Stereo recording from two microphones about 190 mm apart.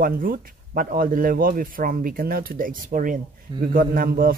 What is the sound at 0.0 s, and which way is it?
A man's voice, 50° right (ahead or behind).